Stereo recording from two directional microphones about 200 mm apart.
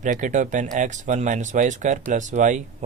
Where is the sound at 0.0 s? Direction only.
40° right (ahead or behind).